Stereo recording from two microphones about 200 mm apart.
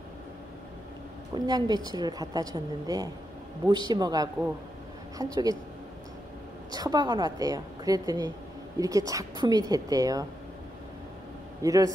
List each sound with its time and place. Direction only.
1.3 s a woman's voice: 20° right (ahead or behind)
6.7 s a woman's voice: 20° right (ahead or behind)
11.6 s a woman's voice: 15° right (ahead or behind)